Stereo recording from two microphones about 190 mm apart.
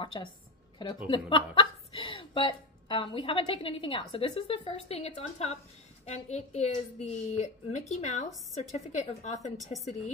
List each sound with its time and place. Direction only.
0.0 s a woman's voice: 25° left (ahead or behind)